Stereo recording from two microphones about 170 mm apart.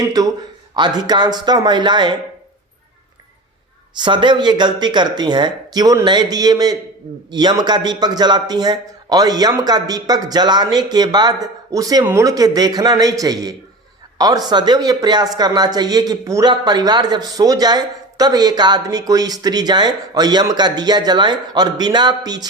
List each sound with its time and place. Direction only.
0.0 s speech: 20° right (ahead or behind)
3.9 s speech: 25° right (ahead or behind)